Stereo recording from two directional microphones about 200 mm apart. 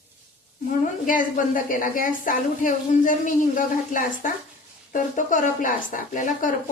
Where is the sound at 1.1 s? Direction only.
40° left (ahead or behind).